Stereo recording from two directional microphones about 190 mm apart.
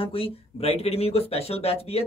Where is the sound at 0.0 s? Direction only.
30° left (ahead or behind).